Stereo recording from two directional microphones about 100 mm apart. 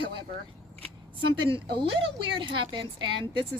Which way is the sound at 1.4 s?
60° right (ahead or behind).